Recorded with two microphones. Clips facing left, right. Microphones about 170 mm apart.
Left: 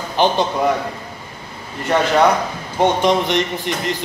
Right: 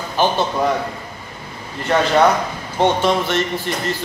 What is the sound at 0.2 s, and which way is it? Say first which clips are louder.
Speech: left 1 dB; 20° left (ahead or behind).